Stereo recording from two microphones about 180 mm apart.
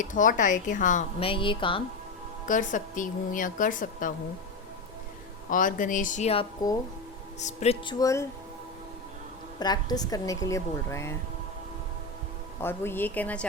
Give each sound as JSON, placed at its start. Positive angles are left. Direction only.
{"t": 0.0, "sound": "a woman's voice", "side_deg": 45}
{"t": 1.2, "sound": "a woman's voice", "side_deg": 30}
{"t": 2.5, "sound": "a woman's voice", "side_deg": 45}
{"t": 5.5, "sound": "a woman's voice", "side_deg": 45}
{"t": 6.6, "sound": "a woman's voice", "side_deg": 20}
{"t": 7.3, "sound": "speech", "side_deg": 40}
{"t": 7.9, "sound": "a woman's voice", "side_deg": 15}
{"t": 9.6, "sound": "a woman's voice", "side_deg": 20}
{"t": 12.6, "sound": "a woman's voice", "side_deg": 10}